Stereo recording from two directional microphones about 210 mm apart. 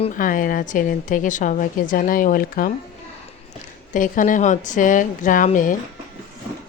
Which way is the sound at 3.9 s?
40° left (ahead or behind).